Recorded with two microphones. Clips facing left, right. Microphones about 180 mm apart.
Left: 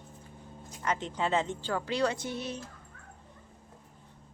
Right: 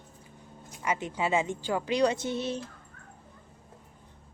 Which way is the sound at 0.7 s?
10° right (ahead or behind).